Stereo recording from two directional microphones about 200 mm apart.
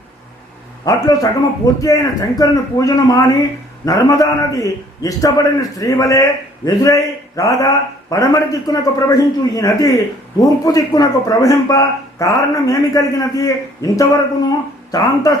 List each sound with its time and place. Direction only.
0.9 s a man's voice: 15° left (ahead or behind)